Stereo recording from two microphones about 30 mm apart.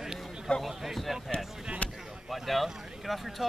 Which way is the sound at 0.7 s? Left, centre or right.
Centre.